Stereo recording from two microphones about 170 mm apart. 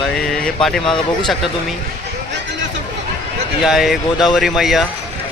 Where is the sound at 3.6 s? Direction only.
Centre (ahead or behind).